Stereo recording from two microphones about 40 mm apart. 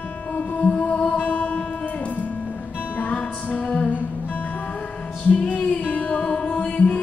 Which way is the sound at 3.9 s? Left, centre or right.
Left.